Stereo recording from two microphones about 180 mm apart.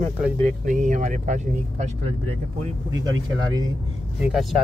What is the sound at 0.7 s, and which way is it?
Speech, 45° right (ahead or behind).